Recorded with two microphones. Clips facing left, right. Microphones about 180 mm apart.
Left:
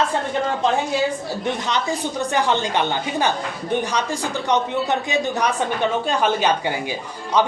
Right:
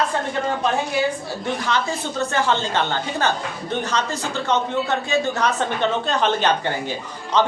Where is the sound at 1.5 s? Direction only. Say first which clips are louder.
Even; 20° left (ahead or behind).